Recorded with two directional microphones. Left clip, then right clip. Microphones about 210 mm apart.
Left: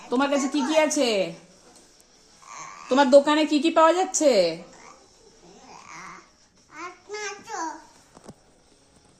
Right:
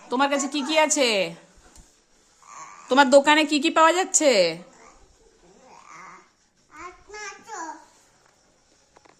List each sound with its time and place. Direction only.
0.1 s a woman's voice: 10° right (ahead or behind)
2.9 s a woman's voice: 25° right (ahead or behind)
6.7 s babbling: 10° right (ahead or behind)